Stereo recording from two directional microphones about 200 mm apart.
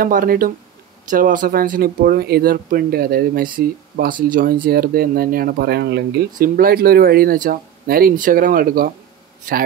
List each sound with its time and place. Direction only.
0.0 s speech: 45° right (ahead or behind)
6.3 s speech: 45° right (ahead or behind)